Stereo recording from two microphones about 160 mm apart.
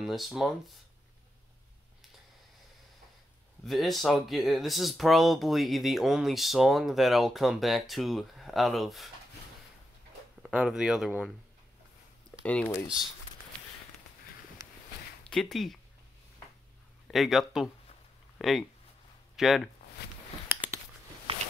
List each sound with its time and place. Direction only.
0.0 s speech: centre (ahead or behind)
3.6 s speech: centre (ahead or behind)
10.5 s speech: 5° right (ahead or behind)
12.4 s speech: 10° left (ahead or behind)
15.2 s speech: 5° left (ahead or behind)
17.1 s speech: centre (ahead or behind)
20.4 s a sound: 10° right (ahead or behind)
21.3 s a sound: 35° right (ahead or behind)